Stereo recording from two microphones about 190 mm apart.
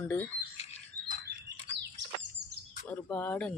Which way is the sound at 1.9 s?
70° right (ahead or behind).